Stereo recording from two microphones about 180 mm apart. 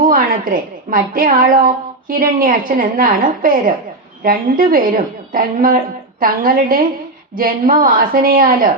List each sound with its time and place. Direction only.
0.0 s a woman's voice: 50° right (ahead or behind)